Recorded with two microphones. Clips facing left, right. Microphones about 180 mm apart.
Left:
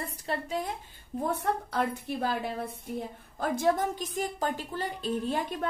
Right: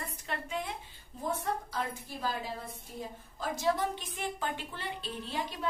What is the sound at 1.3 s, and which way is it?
A woman's voice, 65° left (ahead or behind).